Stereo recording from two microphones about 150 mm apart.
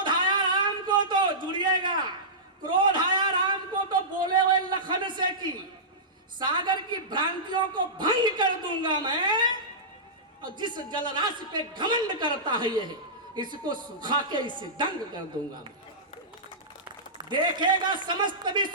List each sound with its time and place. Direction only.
0.0 s a sound: 30° right (ahead or behind)
4.6 s a man's voice: 30° right (ahead or behind)
10.6 s a man's voice: 30° right (ahead or behind)
16.8 s a man's voice: 30° right (ahead or behind)